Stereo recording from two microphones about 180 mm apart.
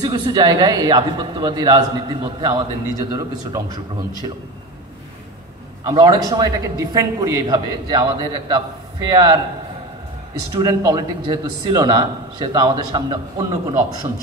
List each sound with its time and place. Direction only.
0.0 s a man's voice: 25° right (ahead or behind)
5.9 s a man's voice: 20° right (ahead or behind)
10.5 s a man's voice: 20° right (ahead or behind)